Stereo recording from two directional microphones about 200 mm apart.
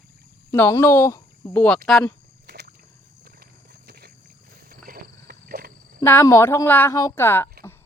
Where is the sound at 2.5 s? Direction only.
55° right (ahead or behind).